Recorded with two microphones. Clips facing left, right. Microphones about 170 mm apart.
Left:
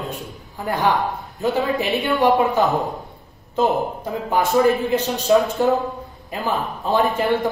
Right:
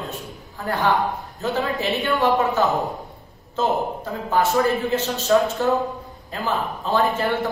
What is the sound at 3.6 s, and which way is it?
A man's voice, 15° left (ahead or behind).